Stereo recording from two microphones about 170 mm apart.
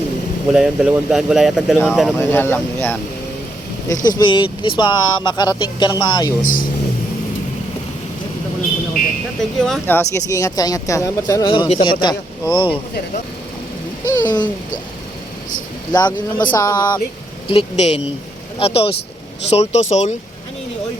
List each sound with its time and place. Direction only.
0.5 s speech: 5° right (ahead or behind)
2.1 s speech: 15° left (ahead or behind)
4.2 s speech: 25° left (ahead or behind)
6.4 s speech: 55° left (ahead or behind)
9.6 s speech: 5° left (ahead or behind); by 12.7 s 25° left (ahead or behind)
14.0 s speech: 15° left (ahead or behind)
15.9 s speech: 25° left (ahead or behind)
17.5 s speech: 35° left (ahead or behind)